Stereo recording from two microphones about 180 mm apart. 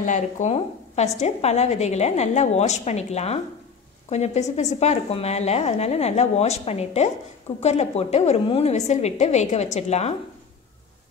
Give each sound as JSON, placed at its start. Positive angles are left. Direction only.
{"t": 0.0, "sound": "a woman's voice", "side_deg": 45}